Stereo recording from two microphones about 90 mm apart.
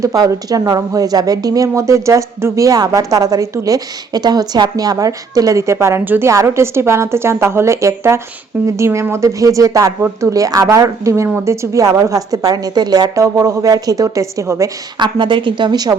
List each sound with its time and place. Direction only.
0.0 s a woman's voice: 40° right (ahead or behind)
14.9 s a woman's voice: 60° right (ahead or behind)